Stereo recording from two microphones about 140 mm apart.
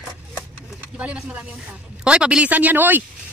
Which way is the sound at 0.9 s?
10° right (ahead or behind).